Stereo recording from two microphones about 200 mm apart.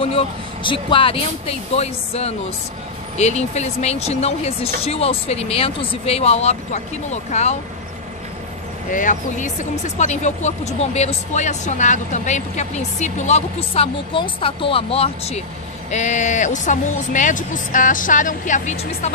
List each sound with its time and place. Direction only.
0.7 s speech: 25° left (ahead or behind)
8.9 s speech: 40° left (ahead or behind)